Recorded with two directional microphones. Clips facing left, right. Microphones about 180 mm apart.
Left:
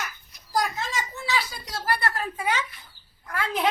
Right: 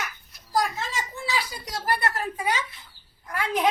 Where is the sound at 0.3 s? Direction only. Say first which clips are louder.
Right 1 dB; centre (ahead or behind).